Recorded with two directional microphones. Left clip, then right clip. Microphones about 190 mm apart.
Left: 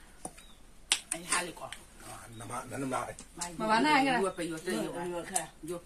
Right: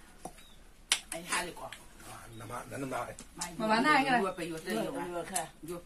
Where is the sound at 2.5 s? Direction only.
50° left (ahead or behind).